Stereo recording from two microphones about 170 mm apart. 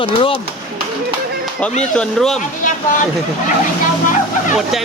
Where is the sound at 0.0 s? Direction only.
30° left (ahead or behind).